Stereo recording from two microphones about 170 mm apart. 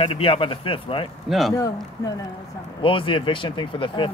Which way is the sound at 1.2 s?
Centre (ahead or behind).